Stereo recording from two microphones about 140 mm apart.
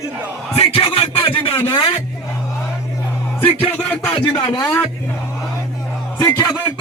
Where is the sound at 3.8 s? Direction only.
10° left (ahead or behind).